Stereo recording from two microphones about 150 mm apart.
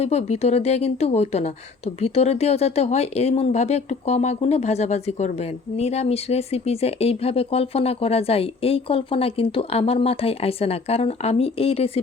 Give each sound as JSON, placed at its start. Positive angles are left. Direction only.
{"t": 0.0, "sound": "speech", "side_deg": 45}